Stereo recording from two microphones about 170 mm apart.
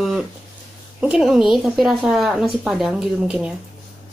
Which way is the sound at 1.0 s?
5° right (ahead or behind).